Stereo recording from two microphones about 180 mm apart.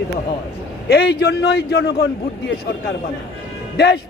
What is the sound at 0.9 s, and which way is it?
A man's voice, 65° left (ahead or behind).